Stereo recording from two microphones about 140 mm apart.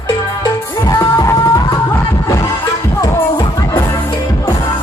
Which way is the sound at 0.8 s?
25° left (ahead or behind).